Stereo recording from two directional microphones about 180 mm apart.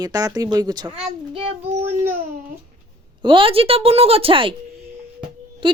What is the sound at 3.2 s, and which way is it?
Speech, 30° right (ahead or behind).